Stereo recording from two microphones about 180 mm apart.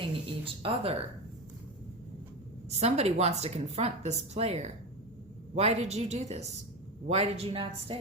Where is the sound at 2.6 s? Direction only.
35° right (ahead or behind).